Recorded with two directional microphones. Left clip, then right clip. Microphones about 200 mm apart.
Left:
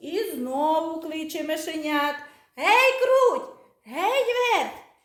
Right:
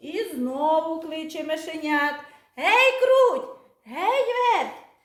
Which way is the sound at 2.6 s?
35° left (ahead or behind).